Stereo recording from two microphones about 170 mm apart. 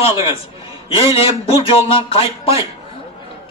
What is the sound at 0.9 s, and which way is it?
A man's voice, 35° left (ahead or behind).